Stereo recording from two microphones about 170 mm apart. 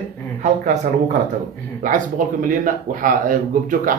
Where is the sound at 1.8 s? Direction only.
50° right (ahead or behind).